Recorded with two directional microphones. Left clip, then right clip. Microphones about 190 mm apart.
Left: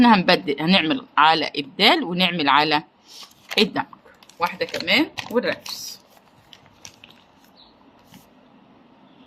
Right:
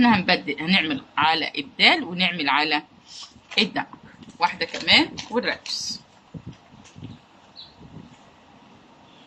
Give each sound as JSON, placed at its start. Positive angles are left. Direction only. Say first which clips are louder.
{"t": 0.0, "sound": "speech", "louder": "left 4 dB", "side_deg": 45}
{"t": 4.4, "sound": "speech", "louder": "even", "side_deg": 25}